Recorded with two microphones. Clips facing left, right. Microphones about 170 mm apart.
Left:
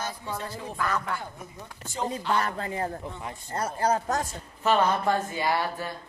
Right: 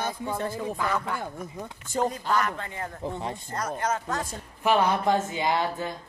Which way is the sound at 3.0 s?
30° right (ahead or behind).